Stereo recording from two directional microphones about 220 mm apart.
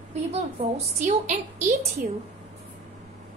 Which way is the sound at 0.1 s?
30° right (ahead or behind).